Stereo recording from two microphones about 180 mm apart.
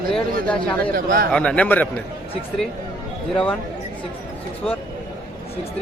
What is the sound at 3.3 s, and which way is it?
Speech, 5° left (ahead or behind).